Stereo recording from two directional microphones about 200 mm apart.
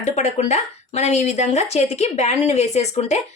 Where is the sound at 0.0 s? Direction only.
35° left (ahead or behind).